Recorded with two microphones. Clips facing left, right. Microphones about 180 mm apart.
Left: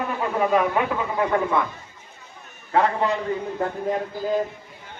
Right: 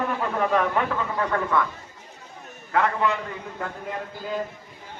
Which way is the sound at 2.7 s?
30° left (ahead or behind).